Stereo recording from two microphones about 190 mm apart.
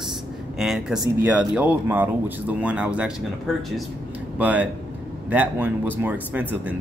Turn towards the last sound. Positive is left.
turn(degrees=-10)  # may be behind; listen again after turning